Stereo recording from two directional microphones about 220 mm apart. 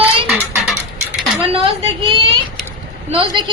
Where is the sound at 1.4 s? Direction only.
25° right (ahead or behind).